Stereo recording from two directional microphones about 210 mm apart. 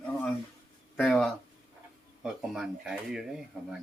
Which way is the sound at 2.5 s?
5° right (ahead or behind).